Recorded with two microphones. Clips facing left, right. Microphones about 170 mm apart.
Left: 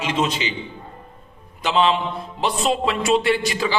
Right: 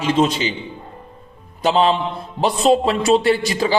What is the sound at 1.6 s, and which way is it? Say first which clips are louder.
A man's voice: right 3 dB; 40° right (ahead or behind).